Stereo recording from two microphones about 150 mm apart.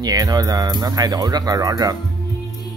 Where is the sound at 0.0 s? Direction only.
25° right (ahead or behind).